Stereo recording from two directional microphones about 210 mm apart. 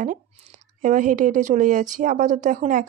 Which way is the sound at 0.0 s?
35° right (ahead or behind).